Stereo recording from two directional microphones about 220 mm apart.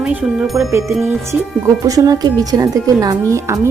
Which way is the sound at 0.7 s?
10° right (ahead or behind).